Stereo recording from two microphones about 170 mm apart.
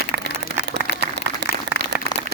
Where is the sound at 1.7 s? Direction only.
90° right.